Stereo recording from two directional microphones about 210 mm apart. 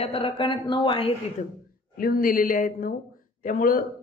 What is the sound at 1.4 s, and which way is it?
A woman's voice, 35° left (ahead or behind).